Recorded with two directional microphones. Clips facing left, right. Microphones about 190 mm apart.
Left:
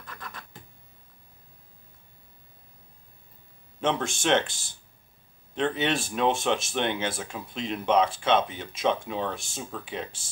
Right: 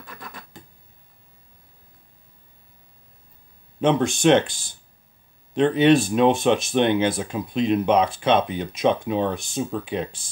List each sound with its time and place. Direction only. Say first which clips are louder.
0.0 s scratch: right 3 dB; 10° right (ahead or behind)
3.8 s speech: right 9 dB; 15° right (ahead or behind)
5.6 s speech: right 10 dB; 15° right (ahead or behind)